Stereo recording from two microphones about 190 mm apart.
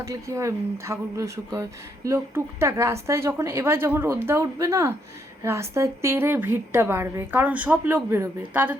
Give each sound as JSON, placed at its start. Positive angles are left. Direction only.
{"t": 0.0, "sound": "a woman's voice", "side_deg": -15}